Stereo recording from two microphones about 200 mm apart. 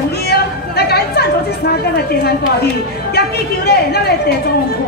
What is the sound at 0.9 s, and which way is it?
A woman's voice, 50° left (ahead or behind).